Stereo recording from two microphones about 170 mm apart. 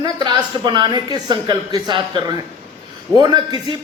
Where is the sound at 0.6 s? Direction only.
25° right (ahead or behind).